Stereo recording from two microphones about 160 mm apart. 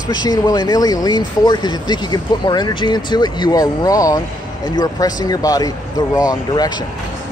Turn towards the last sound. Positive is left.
turn(degrees=25)  # may be behind; listen again after turning